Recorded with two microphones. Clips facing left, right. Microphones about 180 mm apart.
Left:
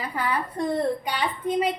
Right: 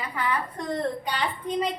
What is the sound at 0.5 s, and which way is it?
Speech, 10° left (ahead or behind).